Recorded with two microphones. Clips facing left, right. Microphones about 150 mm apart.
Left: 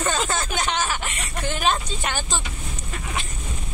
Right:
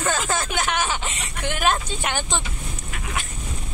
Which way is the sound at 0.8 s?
20° right (ahead or behind).